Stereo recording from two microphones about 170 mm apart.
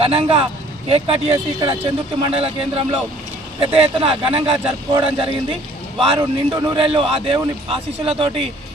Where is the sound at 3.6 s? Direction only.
35° right (ahead or behind).